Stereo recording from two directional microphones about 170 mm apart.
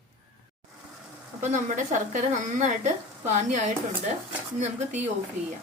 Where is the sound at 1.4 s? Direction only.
45° right (ahead or behind).